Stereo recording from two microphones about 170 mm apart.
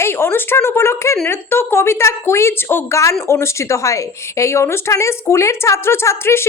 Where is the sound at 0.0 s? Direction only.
15° left (ahead or behind).